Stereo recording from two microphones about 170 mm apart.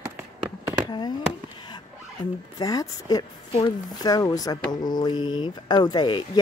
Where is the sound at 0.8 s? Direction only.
25° left (ahead or behind).